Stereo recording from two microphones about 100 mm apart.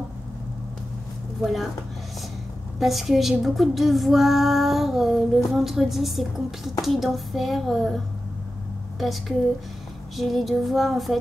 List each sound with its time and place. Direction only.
1.4 s speech: centre (ahead or behind)
2.8 s speech: centre (ahead or behind)
10.1 s speech: centre (ahead or behind)